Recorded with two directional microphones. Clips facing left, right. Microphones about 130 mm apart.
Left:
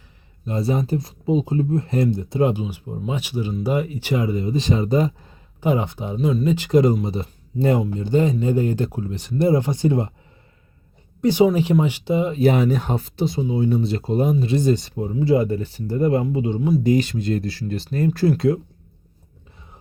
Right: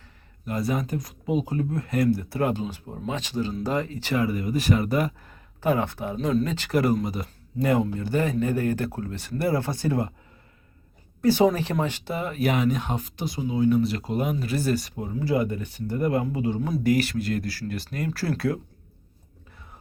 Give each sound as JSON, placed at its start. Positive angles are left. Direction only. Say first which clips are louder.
{"t": 0.4, "sound": "speech", "louder": "left 4 dB", "side_deg": 25}
{"t": 6.1, "sound": "speech", "louder": "left 3 dB", "side_deg": 5}
{"t": 6.4, "sound": "speech", "louder": "left 7 dB", "side_deg": 15}
{"t": 11.2, "sound": "speech", "louder": "left 3 dB", "side_deg": 20}
{"t": 12.4, "sound": "speech", "louder": "left 3 dB", "side_deg": 30}